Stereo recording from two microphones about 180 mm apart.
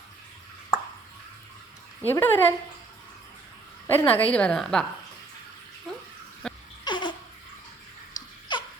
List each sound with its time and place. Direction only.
2.0 s a woman's voice: 10° left (ahead or behind)
3.8 s a woman's voice: 10° left (ahead or behind)
6.8 s laughter: 25° left (ahead or behind)